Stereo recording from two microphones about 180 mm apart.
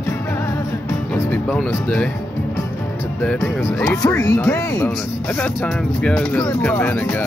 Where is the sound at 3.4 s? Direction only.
15° left (ahead or behind).